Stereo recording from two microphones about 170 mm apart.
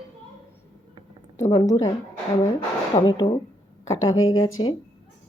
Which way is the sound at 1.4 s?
20° left (ahead or behind).